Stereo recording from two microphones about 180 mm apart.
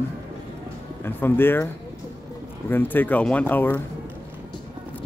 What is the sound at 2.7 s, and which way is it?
A man's voice, 10° left (ahead or behind).